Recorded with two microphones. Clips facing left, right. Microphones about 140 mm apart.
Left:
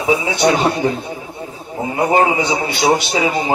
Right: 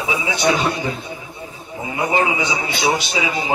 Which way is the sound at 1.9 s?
45° left (ahead or behind).